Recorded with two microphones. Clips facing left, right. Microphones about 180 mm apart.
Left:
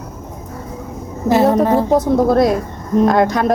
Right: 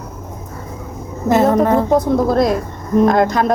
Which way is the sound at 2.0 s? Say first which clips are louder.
Left 1 dB; 70° left (ahead or behind).